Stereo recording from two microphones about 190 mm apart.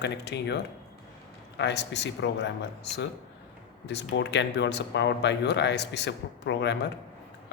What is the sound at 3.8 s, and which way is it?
Speech, 65° left (ahead or behind).